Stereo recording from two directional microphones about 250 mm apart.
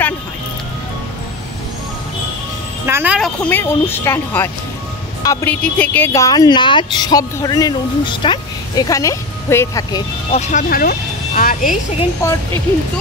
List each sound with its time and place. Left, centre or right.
2.9 s a woman's voice: centre
3.4 s speech: centre
10.3 s speech: left
12.2 s speech: centre